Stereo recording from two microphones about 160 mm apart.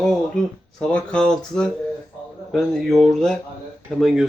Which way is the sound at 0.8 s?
5° left (ahead or behind).